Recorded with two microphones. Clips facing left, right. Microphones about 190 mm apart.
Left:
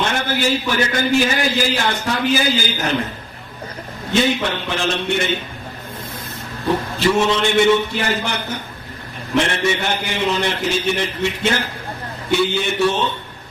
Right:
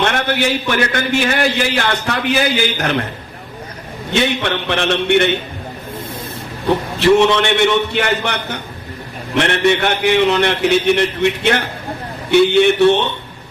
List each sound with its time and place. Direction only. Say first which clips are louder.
0.2 s a man's voice: right 2 dB; 65° right (ahead or behind)
4.1 s a man's voice: right 1 dB; 65° right (ahead or behind)
7.0 s a man's voice: right 6 dB; 70° right (ahead or behind)